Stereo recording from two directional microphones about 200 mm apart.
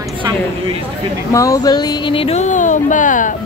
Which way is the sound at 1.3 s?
15° left (ahead or behind).